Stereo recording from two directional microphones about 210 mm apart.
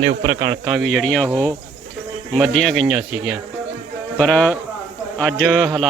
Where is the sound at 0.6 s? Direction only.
Centre (ahead or behind).